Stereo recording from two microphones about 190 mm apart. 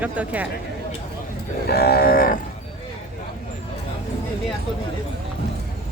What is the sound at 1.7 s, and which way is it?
Livestock, 55° left (ahead or behind).